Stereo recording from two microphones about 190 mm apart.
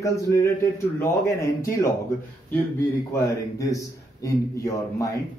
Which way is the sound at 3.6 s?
15° left (ahead or behind).